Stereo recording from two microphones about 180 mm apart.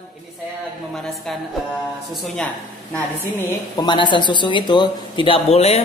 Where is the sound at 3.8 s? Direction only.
25° left (ahead or behind).